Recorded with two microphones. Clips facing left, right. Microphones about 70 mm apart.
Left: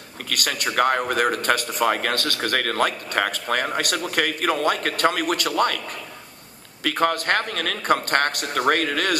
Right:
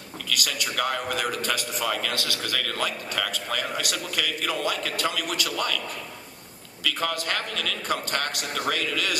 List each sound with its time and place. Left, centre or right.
0.3 s a man's voice: left
6.8 s a man's voice: left